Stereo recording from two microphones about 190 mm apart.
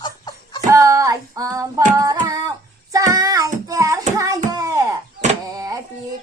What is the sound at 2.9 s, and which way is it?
Child singing, 15° right (ahead or behind).